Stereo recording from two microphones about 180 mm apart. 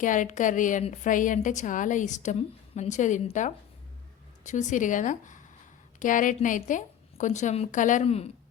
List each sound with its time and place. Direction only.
0.0 s a woman's voice: 45° left (ahead or behind)